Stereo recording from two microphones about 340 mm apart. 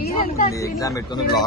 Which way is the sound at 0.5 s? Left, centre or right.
Centre.